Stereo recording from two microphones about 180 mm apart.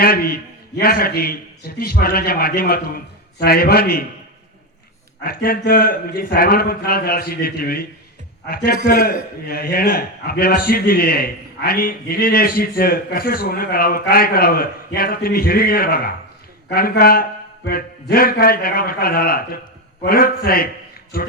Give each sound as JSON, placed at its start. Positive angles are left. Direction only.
{"t": 0.0, "sound": "a man's voice", "side_deg": 60}
{"t": 5.2, "sound": "a man's voice", "side_deg": 55}